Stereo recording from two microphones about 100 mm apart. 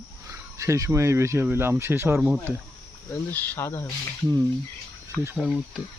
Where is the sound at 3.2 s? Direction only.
20° left (ahead or behind).